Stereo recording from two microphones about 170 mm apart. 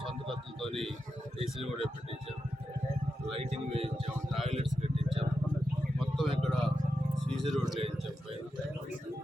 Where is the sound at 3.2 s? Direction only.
35° right (ahead or behind).